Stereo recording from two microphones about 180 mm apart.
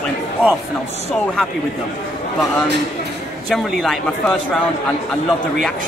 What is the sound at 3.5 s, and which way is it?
A man's voice, centre (ahead or behind).